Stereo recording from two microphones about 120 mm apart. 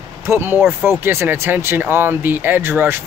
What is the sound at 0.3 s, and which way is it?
Speech, 20° right (ahead or behind).